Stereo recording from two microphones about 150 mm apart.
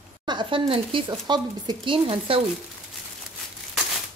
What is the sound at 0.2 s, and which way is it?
Speech, 30° right (ahead or behind).